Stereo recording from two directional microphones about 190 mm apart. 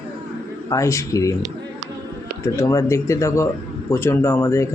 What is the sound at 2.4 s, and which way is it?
Speech, 15° left (ahead or behind).